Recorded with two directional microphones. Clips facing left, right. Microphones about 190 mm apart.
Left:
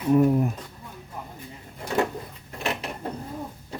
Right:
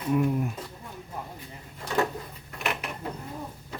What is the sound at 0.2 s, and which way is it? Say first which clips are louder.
Speech: left 6 dB; 45° left (ahead or behind).